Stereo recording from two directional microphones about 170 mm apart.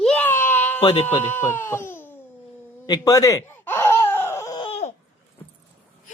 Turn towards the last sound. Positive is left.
turn(degrees=40)  # may be behind; listen again after turning